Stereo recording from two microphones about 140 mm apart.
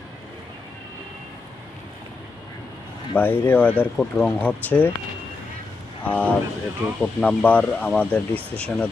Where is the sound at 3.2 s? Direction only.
15° left (ahead or behind).